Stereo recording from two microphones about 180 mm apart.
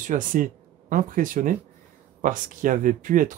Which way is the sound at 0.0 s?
45° right (ahead or behind).